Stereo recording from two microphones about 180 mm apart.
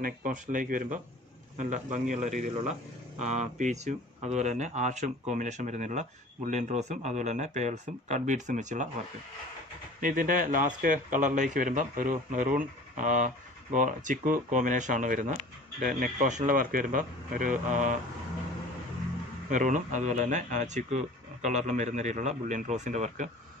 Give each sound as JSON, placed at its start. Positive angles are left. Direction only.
{"t": 0.0, "sound": "a man's voice", "side_deg": -45}
{"t": 9.9, "sound": "a man's voice", "side_deg": -50}
{"t": 19.5, "sound": "speech", "side_deg": -45}